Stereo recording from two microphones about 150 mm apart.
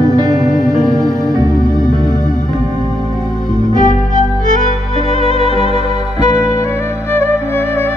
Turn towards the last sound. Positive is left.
turn(degrees=15)  # may be behind; listen again after turning